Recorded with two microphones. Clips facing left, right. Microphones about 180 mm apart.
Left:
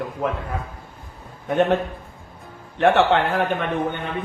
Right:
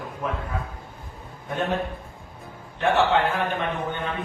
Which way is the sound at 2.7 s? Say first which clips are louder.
Left 4 dB; 65° left (ahead or behind).